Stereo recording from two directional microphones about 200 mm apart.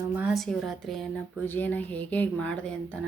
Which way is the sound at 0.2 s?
Centre (ahead or behind).